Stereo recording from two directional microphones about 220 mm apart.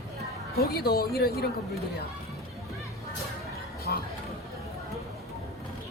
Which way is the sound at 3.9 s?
45° left (ahead or behind).